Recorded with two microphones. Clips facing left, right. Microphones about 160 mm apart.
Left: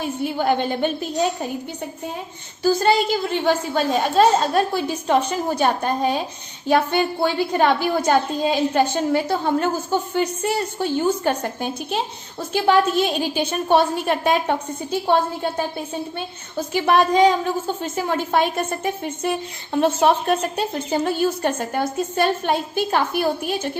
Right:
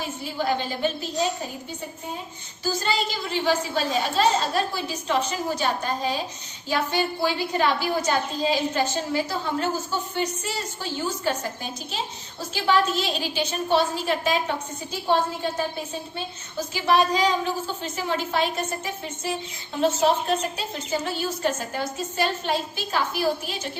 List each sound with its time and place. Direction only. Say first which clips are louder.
0.3 s a woman's voice: left 4 dB; 60° left (ahead or behind)
2.6 s a woman's voice: left 9 dB; 55° left (ahead or behind)